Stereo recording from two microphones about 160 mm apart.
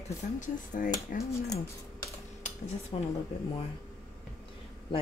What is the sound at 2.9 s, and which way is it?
Speech, 35° left (ahead or behind).